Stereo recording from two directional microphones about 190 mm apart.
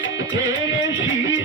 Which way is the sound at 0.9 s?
80° left.